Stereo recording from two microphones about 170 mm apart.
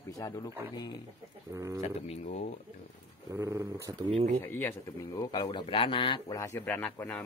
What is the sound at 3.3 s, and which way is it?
Speech, 20° right (ahead or behind).